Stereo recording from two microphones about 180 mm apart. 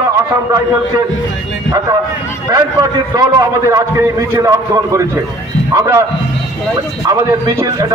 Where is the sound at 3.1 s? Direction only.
20° right (ahead or behind).